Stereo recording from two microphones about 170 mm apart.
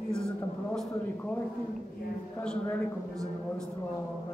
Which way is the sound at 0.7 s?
10° left (ahead or behind).